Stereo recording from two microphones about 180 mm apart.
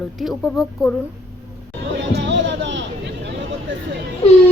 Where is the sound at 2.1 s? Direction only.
80° right.